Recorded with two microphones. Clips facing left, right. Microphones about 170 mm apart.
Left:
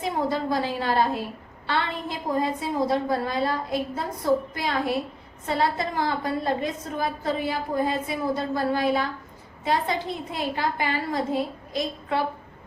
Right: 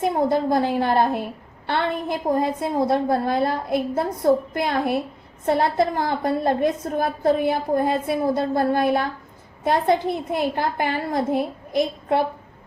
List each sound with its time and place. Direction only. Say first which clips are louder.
0.0 s a woman's voice: right 6 dB; 55° right (ahead or behind)